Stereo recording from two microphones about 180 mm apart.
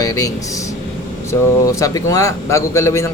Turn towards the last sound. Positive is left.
turn(degrees=15)  # may be behind; listen again after turning